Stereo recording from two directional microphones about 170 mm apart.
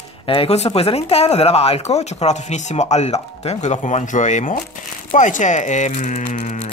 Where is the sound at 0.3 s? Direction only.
35° left (ahead or behind).